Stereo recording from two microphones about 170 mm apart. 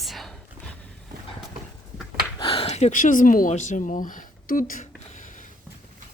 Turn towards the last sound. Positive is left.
turn(degrees=55)  # may be behind; listen again after turning